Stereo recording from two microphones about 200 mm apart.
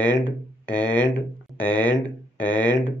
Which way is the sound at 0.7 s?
5° left (ahead or behind).